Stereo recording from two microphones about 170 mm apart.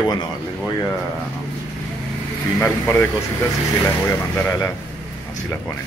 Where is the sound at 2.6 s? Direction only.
10° left (ahead or behind).